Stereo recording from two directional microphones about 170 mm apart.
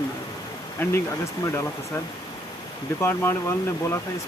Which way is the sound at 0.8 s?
15° left (ahead or behind).